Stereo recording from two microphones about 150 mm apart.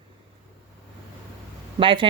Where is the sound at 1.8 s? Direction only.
30° right (ahead or behind).